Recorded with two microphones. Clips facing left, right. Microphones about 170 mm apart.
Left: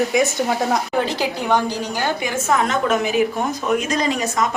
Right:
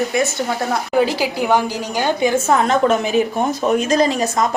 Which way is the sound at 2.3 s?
30° right (ahead or behind).